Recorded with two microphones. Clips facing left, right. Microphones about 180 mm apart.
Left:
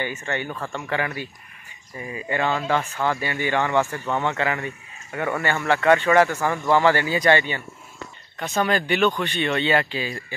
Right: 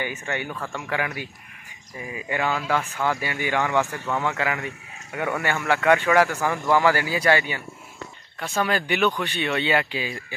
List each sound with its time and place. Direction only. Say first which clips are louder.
0.0 s speech: left 1 dB; 10° right (ahead or behind)